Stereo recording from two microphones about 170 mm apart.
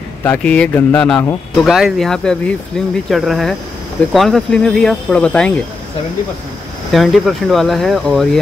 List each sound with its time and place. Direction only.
0.2 s speech: 10° left (ahead or behind)
6.9 s speech: centre (ahead or behind)